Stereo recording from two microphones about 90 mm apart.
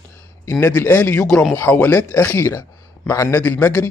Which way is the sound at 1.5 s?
20° left (ahead or behind).